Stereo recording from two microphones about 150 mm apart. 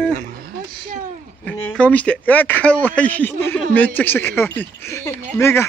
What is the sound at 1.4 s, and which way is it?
A man's voice, 10° left (ahead or behind).